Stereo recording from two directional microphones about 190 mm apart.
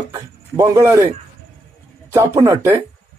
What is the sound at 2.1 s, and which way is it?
Speech, 15° right (ahead or behind).